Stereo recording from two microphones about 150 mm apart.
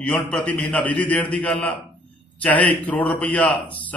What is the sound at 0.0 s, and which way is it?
A man's voice, 10° left (ahead or behind).